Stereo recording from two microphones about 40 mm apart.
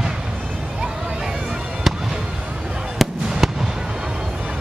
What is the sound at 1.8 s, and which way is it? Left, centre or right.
Fireworks, centre.